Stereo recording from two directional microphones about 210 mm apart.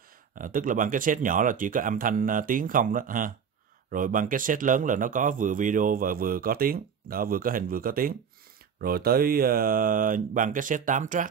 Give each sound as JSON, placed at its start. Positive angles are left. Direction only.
{"t": 0.4, "sound": "speech", "side_deg": -40}